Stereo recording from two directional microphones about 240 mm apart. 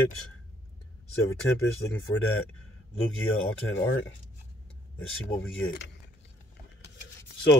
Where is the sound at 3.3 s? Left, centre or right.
Left.